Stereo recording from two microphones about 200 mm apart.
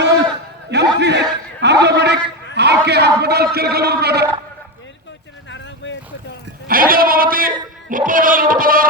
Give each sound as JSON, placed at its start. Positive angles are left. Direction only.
{"t": 0.0, "sound": "a sound", "side_deg": -60}
{"t": 1.6, "sound": "a man's voice", "side_deg": -55}
{"t": 5.5, "sound": "vehicle", "side_deg": 65}
{"t": 6.7, "sound": "speech", "side_deg": -45}